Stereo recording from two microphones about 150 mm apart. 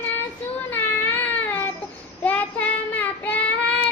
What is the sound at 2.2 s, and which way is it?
Child singing, 10° left (ahead or behind).